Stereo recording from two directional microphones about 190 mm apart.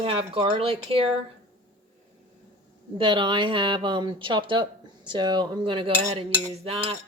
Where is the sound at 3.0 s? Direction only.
25° right (ahead or behind).